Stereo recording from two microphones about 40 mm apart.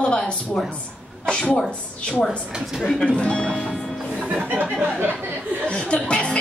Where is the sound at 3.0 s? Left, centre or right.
Left.